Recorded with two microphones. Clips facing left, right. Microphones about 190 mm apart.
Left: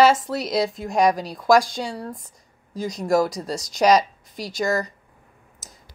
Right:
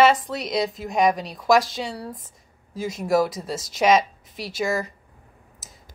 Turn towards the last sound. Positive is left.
turn(degrees=-5)  # may be behind; listen again after turning